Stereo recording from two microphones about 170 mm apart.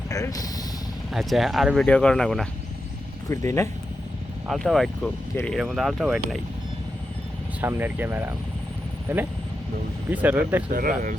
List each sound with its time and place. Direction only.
0.1 s speech: 20° left (ahead or behind)
1.1 s speech: centre (ahead or behind)
3.2 s speech: 15° left (ahead or behind)
4.4 s speech: centre (ahead or behind)
7.6 s speech: 10° right (ahead or behind)
10.7 s speech: 55° right (ahead or behind)